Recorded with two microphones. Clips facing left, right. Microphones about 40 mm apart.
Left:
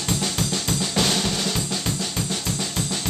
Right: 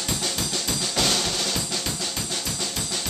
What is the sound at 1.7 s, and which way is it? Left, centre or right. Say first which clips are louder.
Drum kit: left 2 dB; centre.